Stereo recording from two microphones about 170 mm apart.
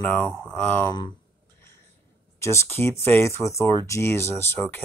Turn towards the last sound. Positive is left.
turn(degrees=15)  # may be behind; listen again after turning